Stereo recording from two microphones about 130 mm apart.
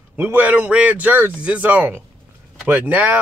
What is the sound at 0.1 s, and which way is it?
Speech, 15° right (ahead or behind).